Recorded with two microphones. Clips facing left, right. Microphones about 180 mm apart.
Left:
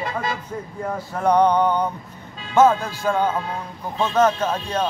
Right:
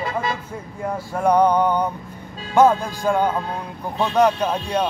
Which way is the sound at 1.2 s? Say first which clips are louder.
Even; 10° right (ahead or behind).